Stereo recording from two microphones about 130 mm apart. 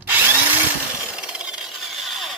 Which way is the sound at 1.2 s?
5° right (ahead or behind).